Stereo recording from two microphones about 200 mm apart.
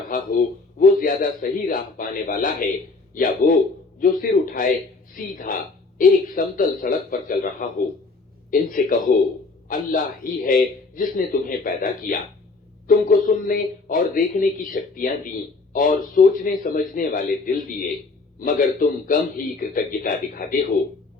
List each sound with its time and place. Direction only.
0.1 s a man's voice: 45° left (ahead or behind)